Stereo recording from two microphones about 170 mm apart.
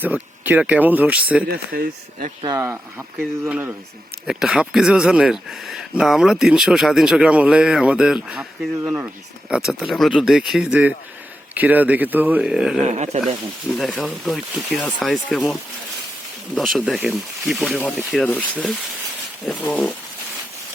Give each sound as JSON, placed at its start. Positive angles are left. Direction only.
{"t": 0.0, "sound": "speech", "side_deg": -10}
{"t": 1.5, "sound": "speech", "side_deg": -60}
{"t": 2.4, "sound": "speech", "side_deg": -20}
{"t": 12.8, "sound": "speech", "side_deg": -40}
{"t": 13.2, "sound": "speech", "side_deg": 0}
{"t": 16.6, "sound": "speech", "side_deg": 0}
{"t": 17.7, "sound": "speech", "side_deg": 10}